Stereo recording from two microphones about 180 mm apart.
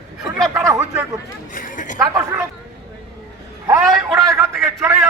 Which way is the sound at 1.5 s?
45° left (ahead or behind).